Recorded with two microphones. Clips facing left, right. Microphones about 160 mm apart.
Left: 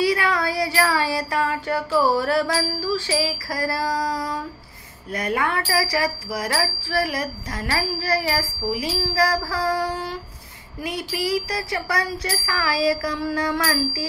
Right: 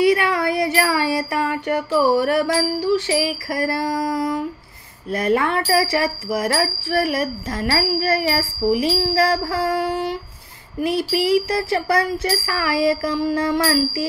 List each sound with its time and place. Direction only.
0.0 s child singing: 20° right (ahead or behind)
5.1 s speech: 25° right (ahead or behind)